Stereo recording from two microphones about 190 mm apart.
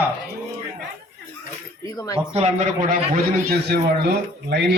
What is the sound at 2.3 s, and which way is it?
A man's voice, 35° right (ahead or behind).